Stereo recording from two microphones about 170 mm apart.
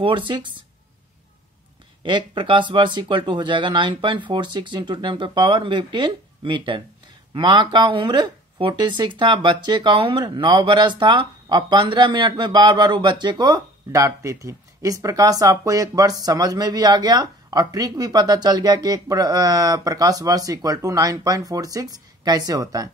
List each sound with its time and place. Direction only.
0.0 s speech: 30° right (ahead or behind)
2.0 s speech: 30° right (ahead or behind)